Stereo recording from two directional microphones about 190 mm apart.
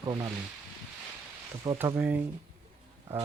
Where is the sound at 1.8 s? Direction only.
10° right (ahead or behind).